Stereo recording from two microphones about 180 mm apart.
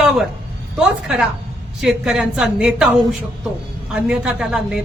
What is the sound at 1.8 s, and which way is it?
Speech, 5° right (ahead or behind).